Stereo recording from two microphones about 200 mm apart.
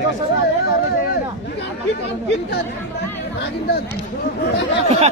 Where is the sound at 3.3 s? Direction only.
55° left (ahead or behind).